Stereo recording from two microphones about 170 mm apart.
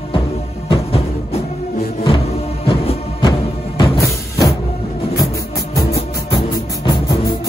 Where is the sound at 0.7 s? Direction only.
35° left (ahead or behind).